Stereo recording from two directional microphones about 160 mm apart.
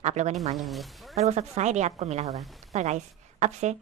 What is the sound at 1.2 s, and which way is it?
A woman's voice, 45° right (ahead or behind).